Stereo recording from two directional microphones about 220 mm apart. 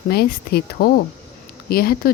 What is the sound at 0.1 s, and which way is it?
Speech, 45° left (ahead or behind).